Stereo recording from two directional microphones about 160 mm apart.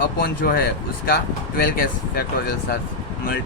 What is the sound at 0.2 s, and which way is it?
Speech, 75° left (ahead or behind).